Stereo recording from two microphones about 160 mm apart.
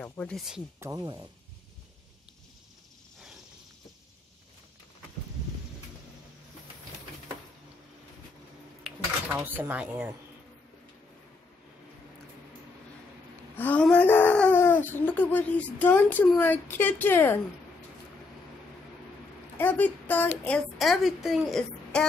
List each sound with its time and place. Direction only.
0.0 s a woman's voice: 5° left (ahead or behind)
0.7 s speech: 20° right (ahead or behind)
8.8 s dishes: 5° right (ahead or behind)
9.4 s speech: 10° right (ahead or behind)
13.6 s a woman's voice: 10° left (ahead or behind)
19.5 s a woman's voice: 10° left (ahead or behind)